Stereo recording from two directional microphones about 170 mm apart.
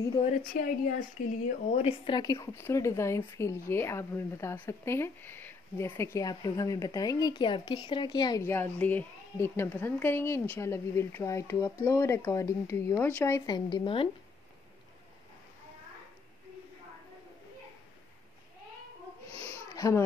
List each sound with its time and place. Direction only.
0.5 s speech: 55° left (ahead or behind)
1.7 s speech: 35° left (ahead or behind); by 13.6 s 15° left (ahead or behind)
13.7 s speech: 30° left (ahead or behind)
19.3 s a sound: 15° left (ahead or behind)